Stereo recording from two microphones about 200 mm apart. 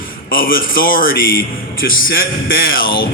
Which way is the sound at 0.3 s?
45° left (ahead or behind).